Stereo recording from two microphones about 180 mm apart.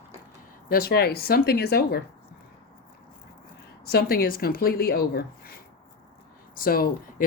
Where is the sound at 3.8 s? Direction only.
60° left (ahead or behind).